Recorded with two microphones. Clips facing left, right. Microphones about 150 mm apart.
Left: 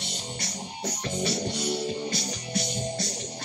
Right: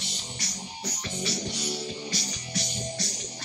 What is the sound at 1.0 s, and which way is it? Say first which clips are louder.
Music: left 5 dB; 55° left (ahead or behind).